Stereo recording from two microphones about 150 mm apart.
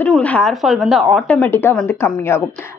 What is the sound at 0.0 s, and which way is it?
Speech, 10° left (ahead or behind).